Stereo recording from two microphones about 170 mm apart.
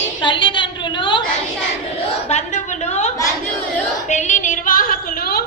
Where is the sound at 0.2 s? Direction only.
30° left (ahead or behind).